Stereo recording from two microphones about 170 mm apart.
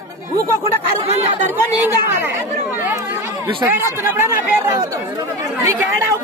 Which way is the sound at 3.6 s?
10° right (ahead or behind).